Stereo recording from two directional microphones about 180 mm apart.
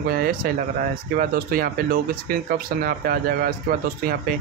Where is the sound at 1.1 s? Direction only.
55° right (ahead or behind).